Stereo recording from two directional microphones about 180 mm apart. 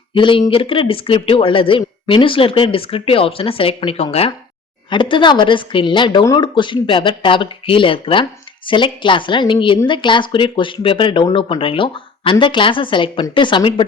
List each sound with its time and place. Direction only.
0.1 s a woman's voice: 30° left (ahead or behind)